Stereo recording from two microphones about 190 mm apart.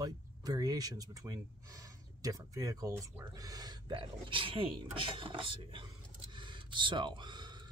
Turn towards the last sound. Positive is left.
turn(degrees=-25)  # may be behind; listen again after turning